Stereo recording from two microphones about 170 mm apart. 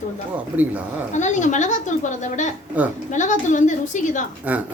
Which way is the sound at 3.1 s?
45° left (ahead or behind).